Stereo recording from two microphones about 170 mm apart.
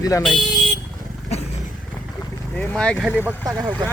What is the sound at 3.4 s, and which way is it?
Speech, 25° right (ahead or behind).